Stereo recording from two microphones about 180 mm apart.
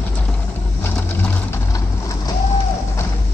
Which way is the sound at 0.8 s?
10° left (ahead or behind).